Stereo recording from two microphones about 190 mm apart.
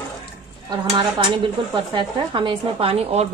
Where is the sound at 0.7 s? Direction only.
25° right (ahead or behind).